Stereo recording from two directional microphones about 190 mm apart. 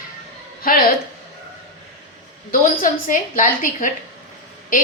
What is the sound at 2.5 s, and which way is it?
A woman's voice, 45° left (ahead or behind).